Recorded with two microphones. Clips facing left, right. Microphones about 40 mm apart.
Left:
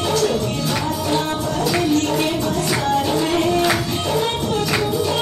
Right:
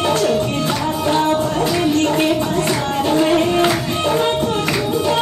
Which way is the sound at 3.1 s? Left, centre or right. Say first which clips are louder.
Right 3 dB; right.